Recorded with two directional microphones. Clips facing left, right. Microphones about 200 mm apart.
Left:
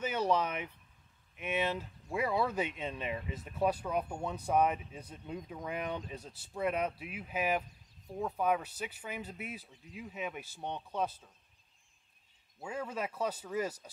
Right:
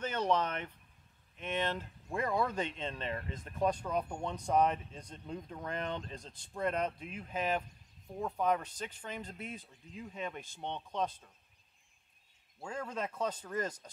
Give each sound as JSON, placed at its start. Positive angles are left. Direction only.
{"t": 0.0, "sound": "speech", "side_deg": 10}
{"t": 12.6, "sound": "speech", "side_deg": 5}